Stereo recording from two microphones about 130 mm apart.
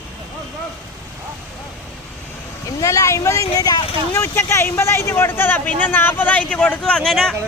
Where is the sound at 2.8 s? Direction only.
25° left (ahead or behind).